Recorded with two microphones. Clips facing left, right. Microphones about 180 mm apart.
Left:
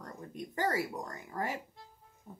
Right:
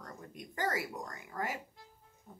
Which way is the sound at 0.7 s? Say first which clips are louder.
Left 3 dB; 35° left (ahead or behind).